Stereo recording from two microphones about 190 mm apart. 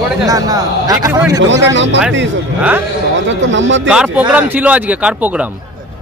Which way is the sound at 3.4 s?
75° right (ahead or behind).